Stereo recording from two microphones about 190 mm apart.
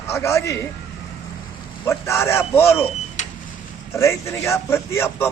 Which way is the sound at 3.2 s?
40° left (ahead or behind).